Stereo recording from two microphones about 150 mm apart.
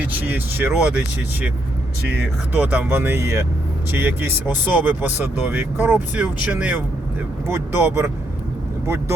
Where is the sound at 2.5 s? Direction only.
10° right (ahead or behind).